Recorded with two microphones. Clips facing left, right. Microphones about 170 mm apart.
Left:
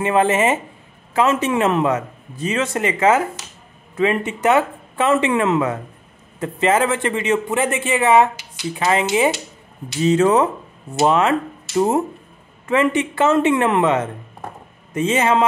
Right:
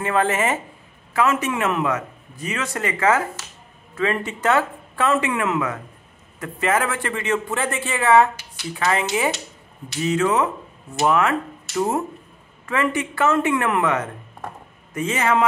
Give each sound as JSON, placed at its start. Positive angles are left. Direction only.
{"t": 0.0, "sound": "a man's voice", "side_deg": 20}
{"t": 10.0, "sound": "a man's voice", "side_deg": 30}